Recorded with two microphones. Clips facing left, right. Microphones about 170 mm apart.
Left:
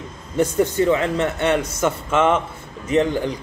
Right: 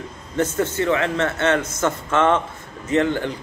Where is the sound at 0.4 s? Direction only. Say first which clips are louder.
Left 3 dB; 15° left (ahead or behind).